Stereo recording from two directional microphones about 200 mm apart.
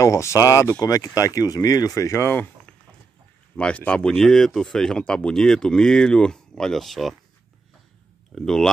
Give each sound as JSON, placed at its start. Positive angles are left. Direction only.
{"t": 0.0, "sound": "speech", "side_deg": 15}
{"t": 3.5, "sound": "speech", "side_deg": 5}
{"t": 8.4, "sound": "speech", "side_deg": 0}